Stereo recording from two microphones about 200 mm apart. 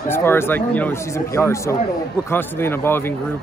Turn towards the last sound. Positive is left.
turn(degrees=10)  # may be behind; listen again after turning